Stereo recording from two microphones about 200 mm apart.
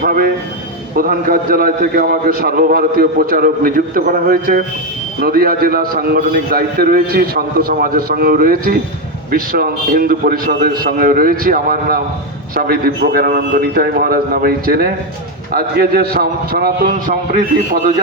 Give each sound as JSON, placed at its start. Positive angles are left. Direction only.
{"t": 0.0, "sound": "a man's voice", "side_deg": -45}